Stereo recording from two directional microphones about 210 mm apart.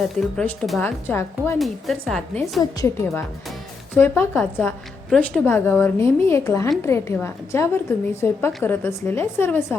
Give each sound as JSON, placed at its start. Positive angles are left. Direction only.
{"t": 0.2, "sound": "a woman's voice", "side_deg": 0}
{"t": 1.5, "sound": "speech", "side_deg": 0}
{"t": 2.6, "sound": "a woman's voice", "side_deg": 15}